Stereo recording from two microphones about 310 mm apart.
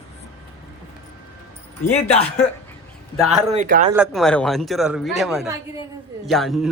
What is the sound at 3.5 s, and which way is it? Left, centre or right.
Speech, right.